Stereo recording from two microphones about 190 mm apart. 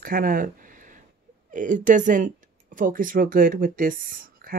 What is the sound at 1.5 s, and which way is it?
Speech, 40° right (ahead or behind).